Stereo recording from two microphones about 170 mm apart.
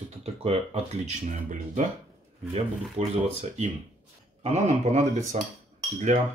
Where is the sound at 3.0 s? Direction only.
40° right (ahead or behind).